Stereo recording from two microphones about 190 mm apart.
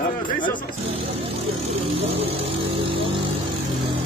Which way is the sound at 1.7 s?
30° right (ahead or behind).